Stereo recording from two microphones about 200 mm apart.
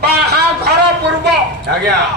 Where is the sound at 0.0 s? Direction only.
55° right (ahead or behind).